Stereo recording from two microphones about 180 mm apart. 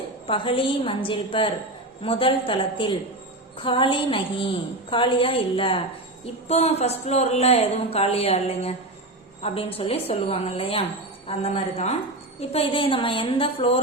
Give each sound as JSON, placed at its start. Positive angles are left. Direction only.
{"t": 0.3, "sound": "a woman's voice", "side_deg": 30}